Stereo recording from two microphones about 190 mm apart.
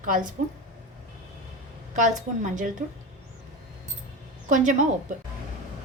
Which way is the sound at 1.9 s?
40° right (ahead or behind).